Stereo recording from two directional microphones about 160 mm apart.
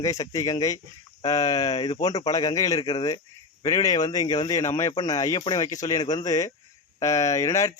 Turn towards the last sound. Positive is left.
turn(degrees=20)  # may be behind; listen again after turning